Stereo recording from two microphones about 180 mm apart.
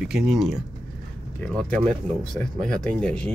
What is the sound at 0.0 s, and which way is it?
Speech, 5° right (ahead or behind).